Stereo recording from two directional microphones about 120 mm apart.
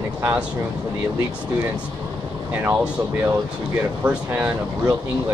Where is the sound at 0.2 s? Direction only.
15° right (ahead or behind).